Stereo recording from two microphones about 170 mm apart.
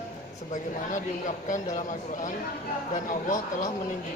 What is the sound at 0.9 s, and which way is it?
Speech, 45° left (ahead or behind).